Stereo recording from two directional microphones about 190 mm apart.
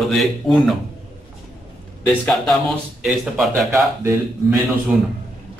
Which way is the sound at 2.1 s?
5° left (ahead or behind).